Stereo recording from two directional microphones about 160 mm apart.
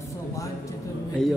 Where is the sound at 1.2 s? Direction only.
25° left (ahead or behind).